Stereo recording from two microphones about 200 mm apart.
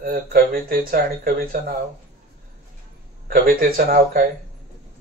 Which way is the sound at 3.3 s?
50° right (ahead or behind).